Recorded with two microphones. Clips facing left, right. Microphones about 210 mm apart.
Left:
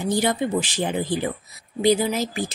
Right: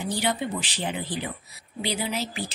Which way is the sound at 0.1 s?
45° left (ahead or behind).